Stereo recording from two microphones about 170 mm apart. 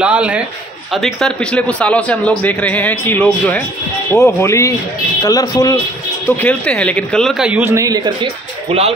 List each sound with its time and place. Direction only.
0.0 s a man's voice: 5° right (ahead or behind); by 5.8 s 20° left (ahead or behind)
6.2 s speech: 10° left (ahead or behind); by 8.3 s 25° right (ahead or behind)